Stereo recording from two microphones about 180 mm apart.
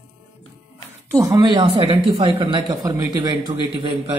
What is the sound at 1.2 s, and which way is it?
Speech, 20° right (ahead or behind).